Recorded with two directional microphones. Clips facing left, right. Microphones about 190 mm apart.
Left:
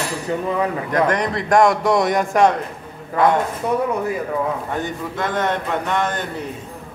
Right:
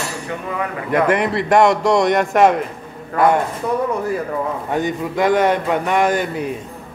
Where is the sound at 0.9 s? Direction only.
5° right (ahead or behind).